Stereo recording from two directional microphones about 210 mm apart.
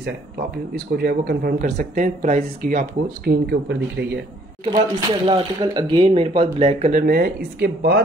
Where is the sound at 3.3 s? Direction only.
55° right (ahead or behind).